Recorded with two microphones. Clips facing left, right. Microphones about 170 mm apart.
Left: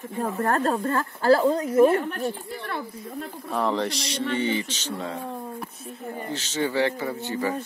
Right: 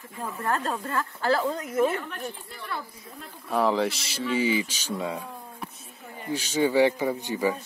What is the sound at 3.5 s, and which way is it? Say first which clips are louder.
Speech: right 2 dB; 5° right (ahead or behind).